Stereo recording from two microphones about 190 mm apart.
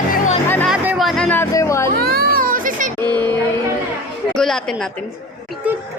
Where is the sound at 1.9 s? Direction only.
55° right (ahead or behind).